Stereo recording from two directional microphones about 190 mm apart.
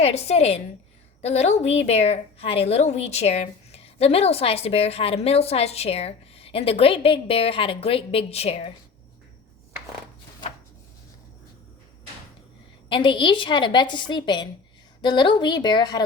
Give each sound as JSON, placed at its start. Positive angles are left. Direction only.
{"t": 0.0, "sound": "a woman's voice", "side_deg": 35}
{"t": 12.9, "sound": "a woman's voice", "side_deg": 25}